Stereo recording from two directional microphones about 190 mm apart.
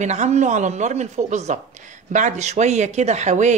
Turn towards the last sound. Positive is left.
turn(degrees=-40)  # may be behind; listen again after turning